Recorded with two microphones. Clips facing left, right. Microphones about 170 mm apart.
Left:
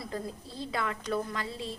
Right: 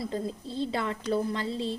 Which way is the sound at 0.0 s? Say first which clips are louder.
Right 5 dB; 25° right (ahead or behind).